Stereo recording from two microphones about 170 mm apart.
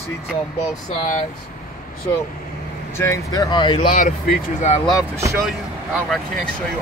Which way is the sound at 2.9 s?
15° left (ahead or behind).